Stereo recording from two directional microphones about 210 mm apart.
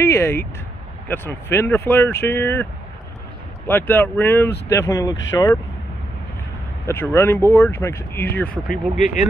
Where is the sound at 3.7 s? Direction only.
10° left (ahead or behind).